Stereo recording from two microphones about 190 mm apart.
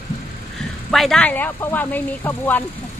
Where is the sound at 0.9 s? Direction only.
Centre (ahead or behind).